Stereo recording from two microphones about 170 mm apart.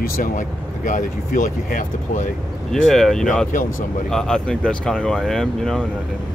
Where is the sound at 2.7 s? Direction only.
5° left (ahead or behind).